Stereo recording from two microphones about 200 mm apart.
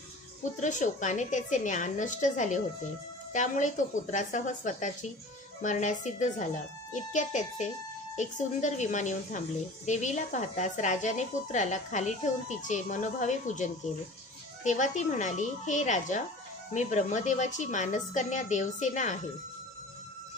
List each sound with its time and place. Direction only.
0.4 s a woman's voice: 40° left (ahead or behind)